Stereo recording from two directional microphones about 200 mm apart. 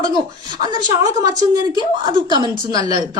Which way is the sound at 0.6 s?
20° right (ahead or behind).